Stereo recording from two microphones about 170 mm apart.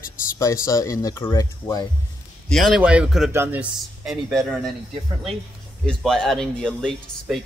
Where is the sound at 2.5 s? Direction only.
Centre (ahead or behind).